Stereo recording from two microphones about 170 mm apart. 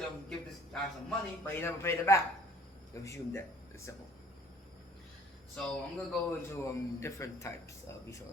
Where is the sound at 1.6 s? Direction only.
15° left (ahead or behind).